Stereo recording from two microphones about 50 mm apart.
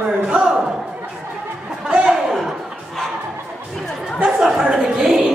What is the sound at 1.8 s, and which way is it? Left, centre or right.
Chuckle, centre.